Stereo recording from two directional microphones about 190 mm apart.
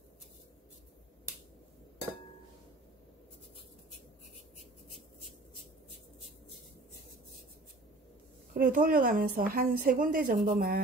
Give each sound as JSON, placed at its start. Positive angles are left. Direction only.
{"t": 8.5, "sound": "a woman's voice", "side_deg": -50}